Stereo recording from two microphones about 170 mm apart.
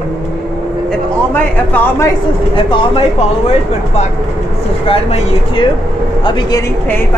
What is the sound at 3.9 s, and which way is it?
Speech, 40° left (ahead or behind).